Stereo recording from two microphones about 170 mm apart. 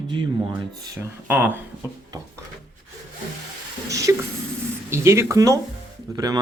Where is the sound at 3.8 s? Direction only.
20° right (ahead or behind).